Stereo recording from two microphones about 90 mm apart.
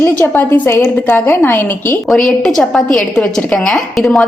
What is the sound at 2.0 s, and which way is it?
A woman's voice, 5° left (ahead or behind).